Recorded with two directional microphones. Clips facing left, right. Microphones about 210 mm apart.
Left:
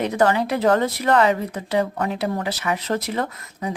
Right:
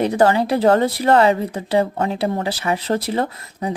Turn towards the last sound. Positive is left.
turn(degrees=-30)  # may be behind; listen again after turning